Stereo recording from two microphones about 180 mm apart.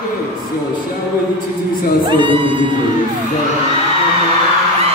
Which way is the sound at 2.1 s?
30° right (ahead or behind).